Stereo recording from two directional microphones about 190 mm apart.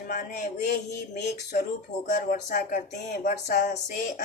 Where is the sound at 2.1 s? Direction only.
45° left (ahead or behind).